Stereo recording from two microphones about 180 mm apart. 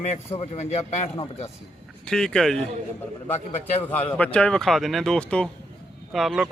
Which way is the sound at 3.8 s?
10° left (ahead or behind).